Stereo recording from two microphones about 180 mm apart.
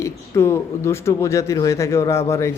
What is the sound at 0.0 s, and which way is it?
Speech, 15° left (ahead or behind).